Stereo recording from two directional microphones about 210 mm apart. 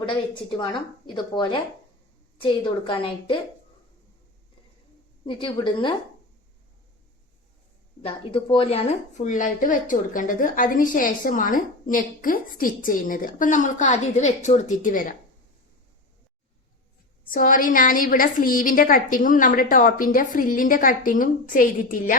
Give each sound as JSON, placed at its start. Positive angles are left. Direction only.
{"t": 0.0, "sound": "a woman's voice", "side_deg": 25}
{"t": 5.2, "sound": "a woman's voice", "side_deg": 25}
{"t": 8.0, "sound": "a woman's voice", "side_deg": 25}
{"t": 17.2, "sound": "a woman's voice", "side_deg": 40}